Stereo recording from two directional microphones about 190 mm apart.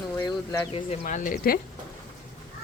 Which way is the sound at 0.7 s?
30° left (ahead or behind).